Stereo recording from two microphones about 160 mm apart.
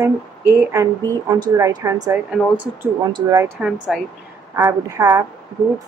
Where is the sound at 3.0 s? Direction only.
25° right (ahead or behind).